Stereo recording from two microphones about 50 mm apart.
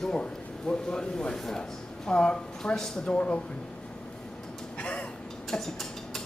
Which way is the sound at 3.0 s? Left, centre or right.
Left.